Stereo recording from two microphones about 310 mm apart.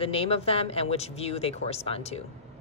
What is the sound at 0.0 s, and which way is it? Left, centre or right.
A woman's voice, centre.